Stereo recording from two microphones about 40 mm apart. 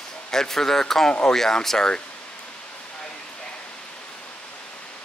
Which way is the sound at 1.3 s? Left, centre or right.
Centre.